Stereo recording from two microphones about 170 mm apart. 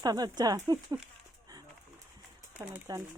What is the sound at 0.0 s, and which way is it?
Speech, 25° right (ahead or behind).